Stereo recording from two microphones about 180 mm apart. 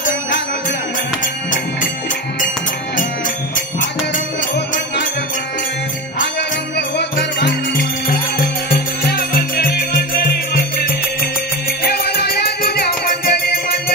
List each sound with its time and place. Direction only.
7.0 s music: 65° left (ahead or behind)
8.6 s music: 55° left (ahead or behind)